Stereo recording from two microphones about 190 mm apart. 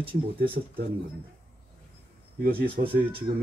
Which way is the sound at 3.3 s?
25° right (ahead or behind).